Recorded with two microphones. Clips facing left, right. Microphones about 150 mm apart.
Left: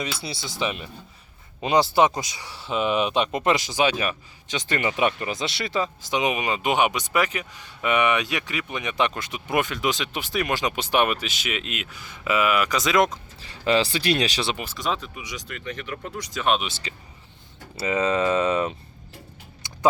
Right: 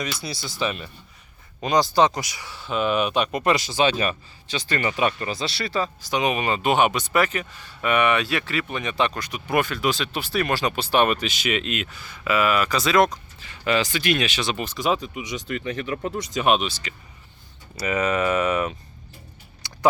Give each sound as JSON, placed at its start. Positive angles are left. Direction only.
{"t": 0.0, "sound": "speech", "side_deg": 25}
{"t": 1.6, "sound": "speech", "side_deg": 25}
{"t": 4.4, "sound": "speech", "side_deg": 20}
{"t": 11.1, "sound": "speech", "side_deg": 0}
{"t": 13.4, "sound": "speech", "side_deg": 30}
{"t": 14.5, "sound": "speech", "side_deg": 10}
{"t": 14.8, "sound": "speech", "side_deg": -10}
{"t": 15.5, "sound": "speech", "side_deg": -35}
{"t": 16.1, "sound": "speech", "side_deg": -25}
{"t": 16.6, "sound": "speech", "side_deg": 25}